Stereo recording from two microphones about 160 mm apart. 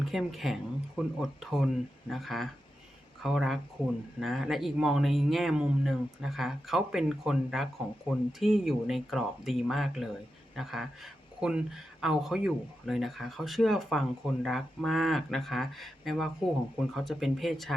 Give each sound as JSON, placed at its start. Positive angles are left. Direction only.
{"t": 0.0, "sound": "speech", "side_deg": 0}